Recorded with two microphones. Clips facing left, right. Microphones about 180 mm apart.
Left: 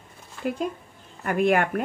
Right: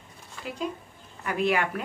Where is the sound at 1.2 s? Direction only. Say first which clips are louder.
Left 4 dB; 50° left (ahead or behind).